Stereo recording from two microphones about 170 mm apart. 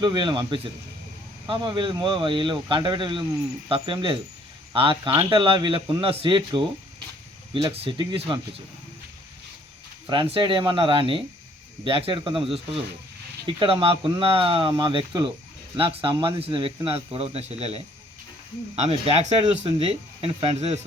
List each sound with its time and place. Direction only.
0.0 s speech: 25° right (ahead or behind)
10.1 s speech: 30° right (ahead or behind)